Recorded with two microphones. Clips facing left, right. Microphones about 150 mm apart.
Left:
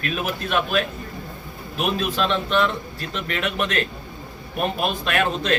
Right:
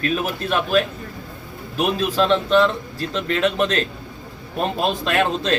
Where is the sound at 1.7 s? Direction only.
30° right (ahead or behind).